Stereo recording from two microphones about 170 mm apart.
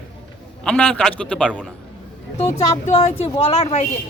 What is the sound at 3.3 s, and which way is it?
Speech, 40° left (ahead or behind).